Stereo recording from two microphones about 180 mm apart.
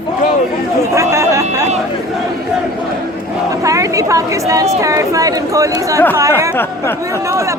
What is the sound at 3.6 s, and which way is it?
Chatter, 15° right (ahead or behind).